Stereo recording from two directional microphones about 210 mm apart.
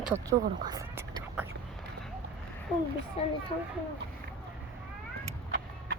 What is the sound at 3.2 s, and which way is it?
Speech, 30° left (ahead or behind).